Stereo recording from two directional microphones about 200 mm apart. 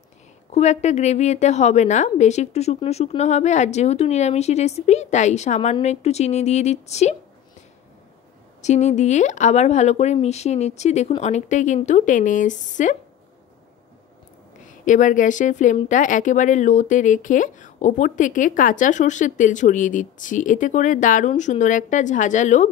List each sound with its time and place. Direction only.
0.5 s speech: 35° left (ahead or behind)
8.6 s speech: 35° left (ahead or behind)
14.9 s speech: 40° left (ahead or behind)